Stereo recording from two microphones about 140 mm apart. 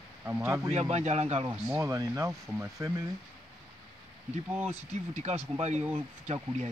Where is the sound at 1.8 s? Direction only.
20° right (ahead or behind).